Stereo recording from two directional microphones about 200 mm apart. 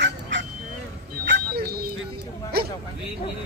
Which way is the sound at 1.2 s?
55° right (ahead or behind).